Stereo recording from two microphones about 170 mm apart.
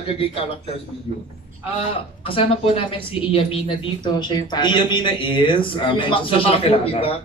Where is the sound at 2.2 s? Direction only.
30° left (ahead or behind).